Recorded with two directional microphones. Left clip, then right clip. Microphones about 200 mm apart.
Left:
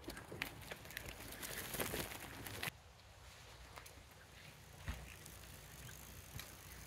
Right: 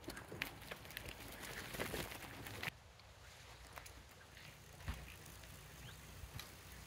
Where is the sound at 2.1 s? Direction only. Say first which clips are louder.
Left 1 dB; 20° left (ahead or behind).